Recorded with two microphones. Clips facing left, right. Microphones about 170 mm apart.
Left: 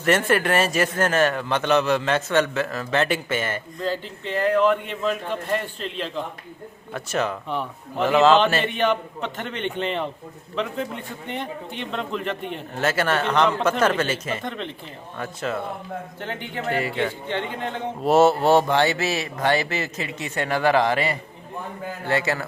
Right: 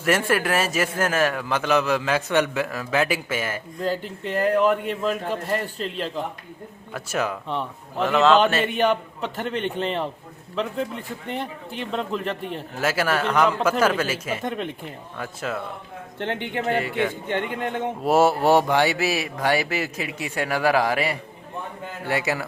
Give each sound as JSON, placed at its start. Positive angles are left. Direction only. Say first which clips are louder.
{"t": 0.0, "sound": "a man's voice", "louder": "left 1 dB", "side_deg": -5}
{"t": 2.3, "sound": "speech", "louder": "even", "side_deg": -15}
{"t": 3.9, "sound": "speech", "louder": "right 1 dB", "side_deg": -45}
{"t": 4.4, "sound": "a man's voice", "louder": "even", "side_deg": -5}
{"t": 11.3, "sound": "a man's voice", "louder": "even", "side_deg": 0}
{"t": 16.3, "sound": "speech", "louder": "right 3 dB", "side_deg": -60}
{"t": 17.2, "sound": "speech", "louder": "right 1 dB", "side_deg": -50}
{"t": 18.0, "sound": "speech", "louder": "left 2 dB", "side_deg": -5}